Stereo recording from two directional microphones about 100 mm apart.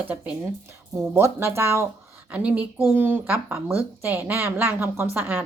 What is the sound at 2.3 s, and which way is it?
A woman's voice, 15° right (ahead or behind).